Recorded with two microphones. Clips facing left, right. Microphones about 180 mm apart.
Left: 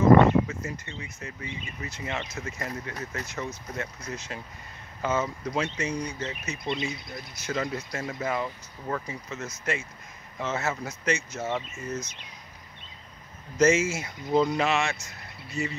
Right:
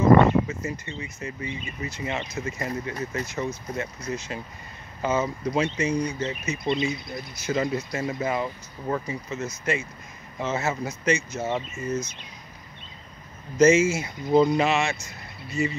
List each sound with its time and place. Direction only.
0.5 s speech: 10° right (ahead or behind)
11.4 s speech: 15° right (ahead or behind)
13.6 s speech: centre (ahead or behind)